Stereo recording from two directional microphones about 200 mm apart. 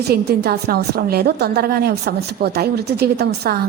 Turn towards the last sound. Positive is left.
turn(degrees=-55)  # may be behind; listen again after turning